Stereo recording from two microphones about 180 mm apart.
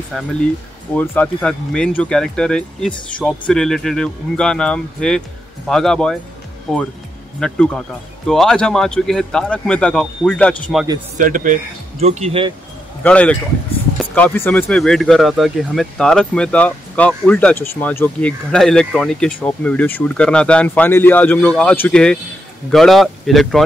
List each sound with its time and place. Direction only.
0.1 s speech: centre (ahead or behind)
11.1 s speech: 45° right (ahead or behind)
13.0 s speech: 5° left (ahead or behind)